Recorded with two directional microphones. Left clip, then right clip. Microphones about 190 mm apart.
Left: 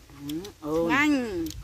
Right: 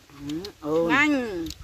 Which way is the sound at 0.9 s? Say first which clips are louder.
Right 1 dB; 20° left (ahead or behind).